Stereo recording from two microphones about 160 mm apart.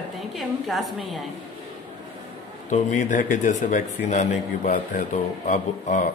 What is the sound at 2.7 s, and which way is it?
Speech, 50° left (ahead or behind).